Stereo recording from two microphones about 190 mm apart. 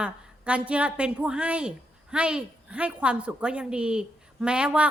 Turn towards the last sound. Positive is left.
turn(degrees=-5)  # may be behind; listen again after turning